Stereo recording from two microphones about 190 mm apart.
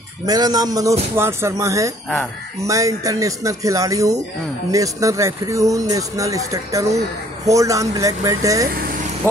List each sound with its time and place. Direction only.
0.3 s a man's voice: 20° right (ahead or behind)
8.7 s vehicle: 50° right (ahead or behind)
9.2 s vehicle: 10° left (ahead or behind)